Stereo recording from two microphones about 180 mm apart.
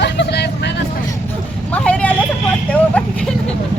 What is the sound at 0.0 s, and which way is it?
Vehicle, 70° left (ahead or behind).